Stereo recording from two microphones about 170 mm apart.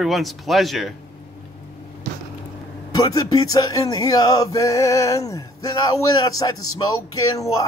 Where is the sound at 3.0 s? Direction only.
20° left (ahead or behind).